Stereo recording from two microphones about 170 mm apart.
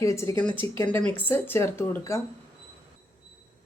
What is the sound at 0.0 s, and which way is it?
Speech, 15° left (ahead or behind).